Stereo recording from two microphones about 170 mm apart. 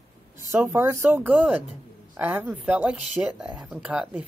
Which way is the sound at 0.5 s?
15° right (ahead or behind).